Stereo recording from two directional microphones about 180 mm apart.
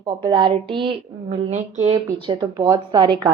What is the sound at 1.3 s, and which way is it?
Speech, 40° right (ahead or behind).